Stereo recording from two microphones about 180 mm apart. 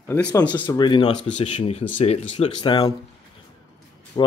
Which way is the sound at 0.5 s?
25° left (ahead or behind).